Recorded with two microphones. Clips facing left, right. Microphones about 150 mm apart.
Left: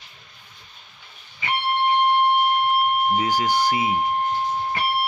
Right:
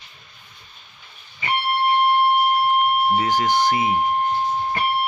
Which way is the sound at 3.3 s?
10° left (ahead or behind).